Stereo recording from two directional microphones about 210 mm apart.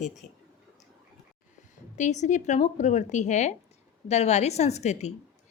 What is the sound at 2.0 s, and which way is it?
A woman's voice, 35° left (ahead or behind).